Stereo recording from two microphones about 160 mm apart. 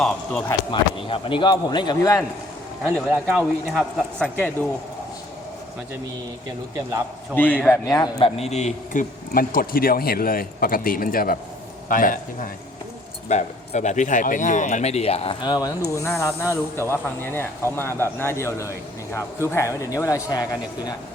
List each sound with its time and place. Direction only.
0.0 s speech: 5° left (ahead or behind)
0.7 s speech: 35° left (ahead or behind)
2.8 s speech: 5° right (ahead or behind)
7.3 s speech: 10° left (ahead or behind)
7.9 s speech: 20° left (ahead or behind)
8.2 s a man's voice: 40° left (ahead or behind); by 20.9 s 20° left (ahead or behind)